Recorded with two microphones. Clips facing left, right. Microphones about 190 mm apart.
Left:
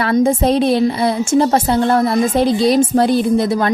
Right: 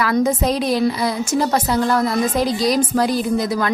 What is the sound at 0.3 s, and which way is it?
A woman's voice, 25° left (ahead or behind).